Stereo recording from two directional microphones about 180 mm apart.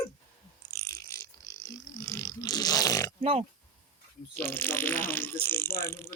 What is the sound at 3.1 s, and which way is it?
Speech, 30° right (ahead or behind).